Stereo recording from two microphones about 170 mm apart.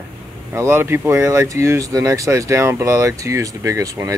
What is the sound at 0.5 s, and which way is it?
Speech, 15° right (ahead or behind).